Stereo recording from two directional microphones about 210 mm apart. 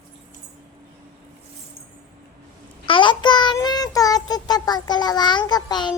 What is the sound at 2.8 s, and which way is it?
Child singing, 25° left (ahead or behind).